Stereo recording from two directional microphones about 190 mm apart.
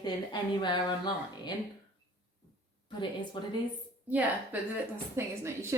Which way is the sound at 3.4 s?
25° left (ahead or behind).